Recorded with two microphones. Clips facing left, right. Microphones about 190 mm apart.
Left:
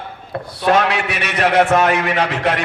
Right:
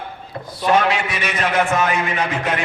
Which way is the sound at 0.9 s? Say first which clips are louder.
Even; 70° left (ahead or behind).